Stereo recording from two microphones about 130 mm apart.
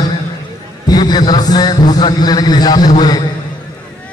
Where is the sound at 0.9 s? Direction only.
30° left (ahead or behind).